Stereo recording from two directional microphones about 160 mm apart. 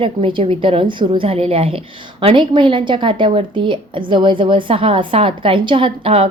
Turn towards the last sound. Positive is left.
turn(degrees=-35)  # may be behind; listen again after turning